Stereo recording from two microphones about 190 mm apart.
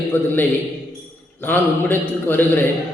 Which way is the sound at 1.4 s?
10° left (ahead or behind).